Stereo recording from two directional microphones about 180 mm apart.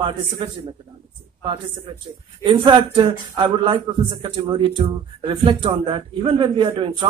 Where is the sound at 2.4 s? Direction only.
30° right (ahead or behind).